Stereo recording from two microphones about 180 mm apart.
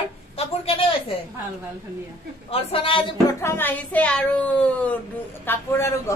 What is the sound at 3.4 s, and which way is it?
Speech, 10° left (ahead or behind).